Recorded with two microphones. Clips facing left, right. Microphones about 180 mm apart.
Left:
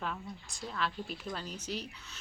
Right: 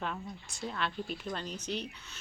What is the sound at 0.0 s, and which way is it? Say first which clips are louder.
Speech: right 1 dB; 5° right (ahead or behind).